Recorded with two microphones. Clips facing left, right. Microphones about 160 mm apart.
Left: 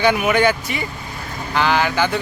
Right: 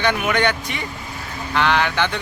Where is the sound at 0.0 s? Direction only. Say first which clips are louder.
Left 4 dB; 10° left (ahead or behind).